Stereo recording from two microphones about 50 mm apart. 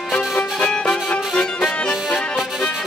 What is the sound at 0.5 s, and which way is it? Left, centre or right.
Music, left.